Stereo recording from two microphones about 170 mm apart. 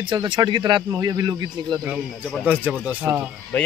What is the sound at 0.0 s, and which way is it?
Speech, 25° right (ahead or behind).